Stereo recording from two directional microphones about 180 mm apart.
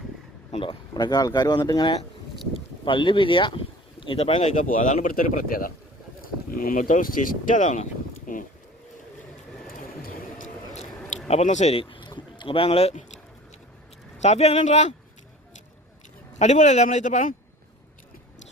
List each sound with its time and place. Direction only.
0.5 s speech: 30° left (ahead or behind)
8.3 s a sound: 45° left (ahead or behind)
10.0 s vehicle: 45° left (ahead or behind)
11.3 s speech: 40° left (ahead or behind)
14.2 s speech: 40° left (ahead or behind)
16.4 s speech: 40° left (ahead or behind)